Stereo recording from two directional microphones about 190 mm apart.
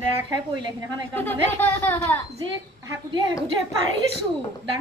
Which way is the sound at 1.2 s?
10° left (ahead or behind).